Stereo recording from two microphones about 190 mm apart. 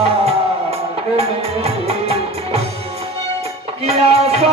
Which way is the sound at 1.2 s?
30° right (ahead or behind).